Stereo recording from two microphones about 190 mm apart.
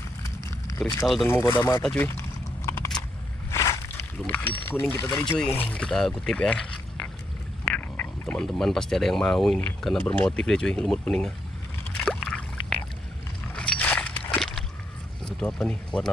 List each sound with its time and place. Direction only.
1.0 s speech: centre (ahead or behind)
1.3 s speech: 20° left (ahead or behind)
1.8 s speech: 5° left (ahead or behind)
2.0 s biting: 15° left (ahead or behind)
3.5 s a sound: 15° left (ahead or behind)
5.2 s speech: 5° left (ahead or behind)
12.0 s a sound: 5° left (ahead or behind)
15.2 s speech: 5° left (ahead or behind)